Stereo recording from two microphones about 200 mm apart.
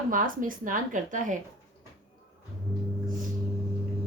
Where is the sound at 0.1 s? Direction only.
45° right (ahead or behind).